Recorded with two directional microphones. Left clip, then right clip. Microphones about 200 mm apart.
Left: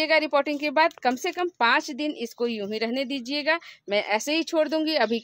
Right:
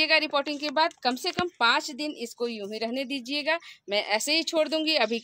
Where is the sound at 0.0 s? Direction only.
30° left (ahead or behind).